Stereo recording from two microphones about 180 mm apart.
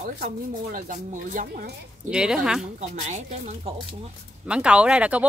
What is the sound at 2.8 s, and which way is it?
Speech, 40° right (ahead or behind).